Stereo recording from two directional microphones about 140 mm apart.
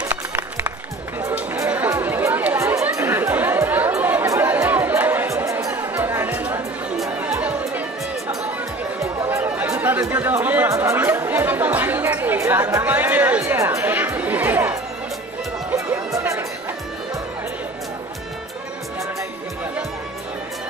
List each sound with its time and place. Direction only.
0.1 s music: 15° right (ahead or behind)
1.3 s chatter: 10° right (ahead or behind)
7.1 s music: 10° right (ahead or behind)
9.0 s chatter: 20° right (ahead or behind)
15.7 s music: 20° right (ahead or behind)